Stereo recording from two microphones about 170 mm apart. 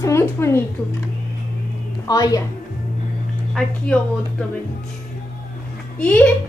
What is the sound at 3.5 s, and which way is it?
Speech, 5° left (ahead or behind).